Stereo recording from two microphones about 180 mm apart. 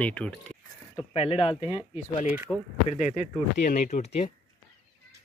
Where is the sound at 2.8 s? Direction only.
40° left (ahead or behind).